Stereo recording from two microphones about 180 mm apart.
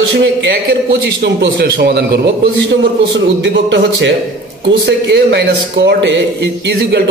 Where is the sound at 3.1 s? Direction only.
90° right.